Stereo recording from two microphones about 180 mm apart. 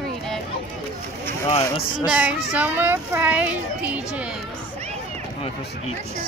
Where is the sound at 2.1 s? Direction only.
10° right (ahead or behind).